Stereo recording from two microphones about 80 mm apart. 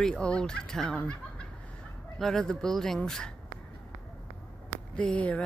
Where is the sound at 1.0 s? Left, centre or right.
Centre.